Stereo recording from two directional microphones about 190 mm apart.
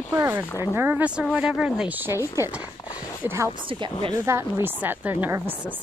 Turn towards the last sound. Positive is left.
turn(degrees=-10)  # may be behind; listen again after turning